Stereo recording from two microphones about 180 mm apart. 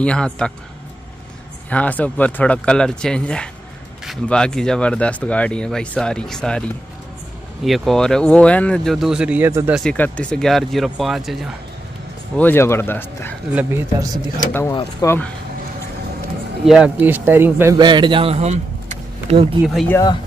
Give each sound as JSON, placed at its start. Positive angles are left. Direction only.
{"t": 0.0, "sound": "speech", "side_deg": 5}
{"t": 1.7, "sound": "speech", "side_deg": 10}
{"t": 7.6, "sound": "speech", "side_deg": 0}
{"t": 9.8, "sound": "speech", "side_deg": 10}
{"t": 12.4, "sound": "speech", "side_deg": 10}
{"t": 13.5, "sound": "speech", "side_deg": -10}
{"t": 14.7, "sound": "speech", "side_deg": 20}
{"t": 16.6, "sound": "speech", "side_deg": -5}
{"t": 17.7, "sound": "a man's voice", "side_deg": -25}
{"t": 19.6, "sound": "speech", "side_deg": 0}
{"t": 19.9, "sound": "speech", "side_deg": 20}